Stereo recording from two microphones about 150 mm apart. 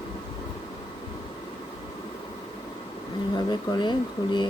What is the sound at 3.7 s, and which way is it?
Speech, 30° left (ahead or behind).